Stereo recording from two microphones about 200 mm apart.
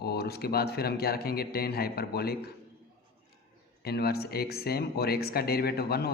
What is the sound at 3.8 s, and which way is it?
Speech, 50° left (ahead or behind).